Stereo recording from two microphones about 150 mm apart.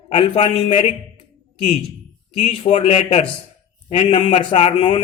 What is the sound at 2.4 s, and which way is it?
Speech, 45° left (ahead or behind).